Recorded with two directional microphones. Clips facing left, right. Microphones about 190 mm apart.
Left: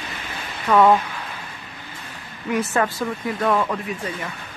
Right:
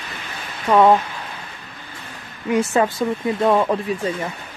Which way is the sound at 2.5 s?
25° right (ahead or behind).